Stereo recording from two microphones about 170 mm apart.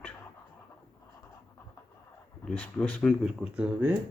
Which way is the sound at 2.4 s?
5° left (ahead or behind).